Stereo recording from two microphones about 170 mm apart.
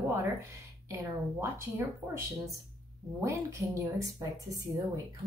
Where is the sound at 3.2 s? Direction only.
20° right (ahead or behind).